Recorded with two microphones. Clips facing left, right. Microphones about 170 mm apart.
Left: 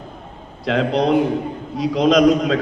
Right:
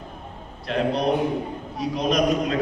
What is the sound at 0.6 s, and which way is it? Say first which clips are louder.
A man's voice: left 5 dB; 90° left.